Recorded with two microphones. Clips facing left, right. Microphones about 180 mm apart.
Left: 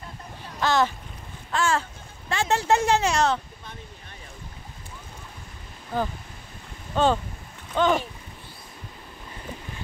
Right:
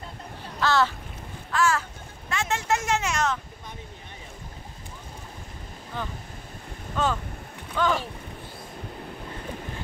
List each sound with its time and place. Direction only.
0.6 s speech: 15° left (ahead or behind)
1.5 s speech: 30° left (ahead or behind)
5.9 s speech: 40° left (ahead or behind)
7.0 s speech: 30° left (ahead or behind)